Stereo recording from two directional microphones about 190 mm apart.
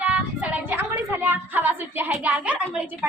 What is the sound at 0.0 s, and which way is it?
A woman's voice, 5° right (ahead or behind).